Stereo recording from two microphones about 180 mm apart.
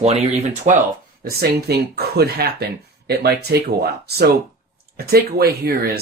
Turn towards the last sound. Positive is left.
turn(degrees=-60)  # may be behind; listen again after turning